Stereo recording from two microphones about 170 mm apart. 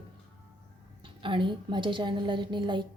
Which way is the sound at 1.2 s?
30° right (ahead or behind).